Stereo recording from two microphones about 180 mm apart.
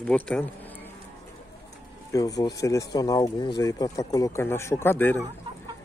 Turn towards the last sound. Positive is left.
turn(degrees=10)  # may be behind; listen again after turning